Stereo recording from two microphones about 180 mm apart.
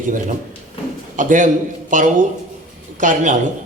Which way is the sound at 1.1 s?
45° right (ahead or behind).